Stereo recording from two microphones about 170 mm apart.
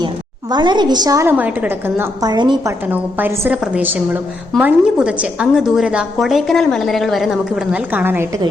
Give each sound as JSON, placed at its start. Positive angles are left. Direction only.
{"t": 0.5, "sound": "a woman's voice", "side_deg": -25}
{"t": 2.3, "sound": "a woman's voice", "side_deg": -25}
{"t": 2.8, "sound": "a woman's voice", "side_deg": -10}